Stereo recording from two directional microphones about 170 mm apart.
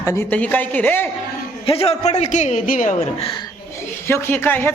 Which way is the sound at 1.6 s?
35° left (ahead or behind).